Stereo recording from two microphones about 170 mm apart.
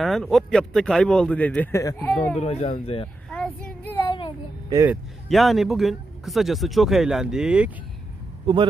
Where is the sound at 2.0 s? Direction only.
5° left (ahead or behind).